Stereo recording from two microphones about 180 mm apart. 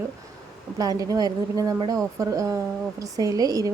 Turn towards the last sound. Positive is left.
turn(degrees=-20)  # may be behind; listen again after turning